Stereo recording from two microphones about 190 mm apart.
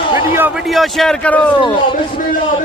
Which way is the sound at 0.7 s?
Centre (ahead or behind).